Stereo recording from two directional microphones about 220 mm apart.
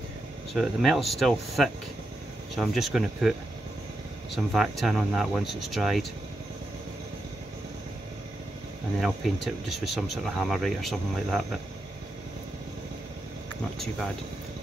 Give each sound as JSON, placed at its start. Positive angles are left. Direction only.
{"t": 0.6, "sound": "speech", "side_deg": 0}
{"t": 4.5, "sound": "speech", "side_deg": 0}
{"t": 9.0, "sound": "speech", "side_deg": 0}